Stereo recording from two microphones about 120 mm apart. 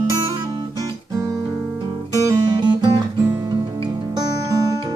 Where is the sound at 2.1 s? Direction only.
35° right (ahead or behind).